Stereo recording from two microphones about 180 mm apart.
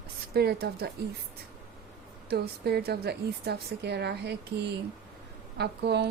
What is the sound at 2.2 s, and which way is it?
A woman's voice, 65° right (ahead or behind).